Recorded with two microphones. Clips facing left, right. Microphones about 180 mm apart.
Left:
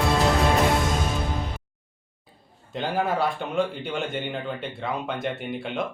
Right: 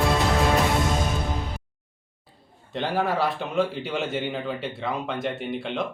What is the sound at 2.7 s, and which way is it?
Speech, centre (ahead or behind).